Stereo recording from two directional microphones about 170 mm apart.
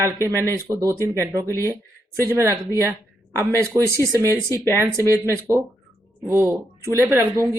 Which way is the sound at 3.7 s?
20° right (ahead or behind).